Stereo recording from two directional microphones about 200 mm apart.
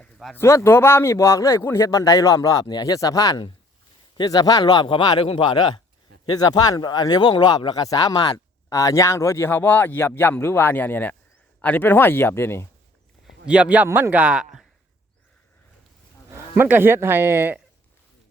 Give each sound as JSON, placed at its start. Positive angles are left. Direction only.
{"t": 0.0, "sound": "a sound", "side_deg": 0}
{"t": 0.3, "sound": "a man's voice", "side_deg": 15}
{"t": 13.2, "sound": "speech", "side_deg": -5}
{"t": 16.6, "sound": "speech", "side_deg": -10}